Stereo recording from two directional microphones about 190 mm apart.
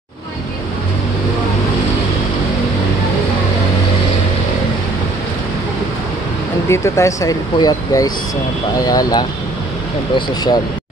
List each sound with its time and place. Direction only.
6.7 s speech: 15° left (ahead or behind)